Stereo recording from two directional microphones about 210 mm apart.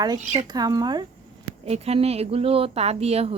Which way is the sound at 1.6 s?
30° right (ahead or behind).